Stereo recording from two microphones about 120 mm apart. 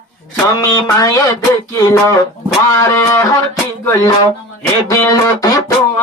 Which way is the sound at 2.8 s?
25° left (ahead or behind).